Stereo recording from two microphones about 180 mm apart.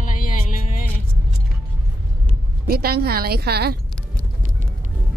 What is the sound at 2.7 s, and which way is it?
A woman's voice, 60° right (ahead or behind).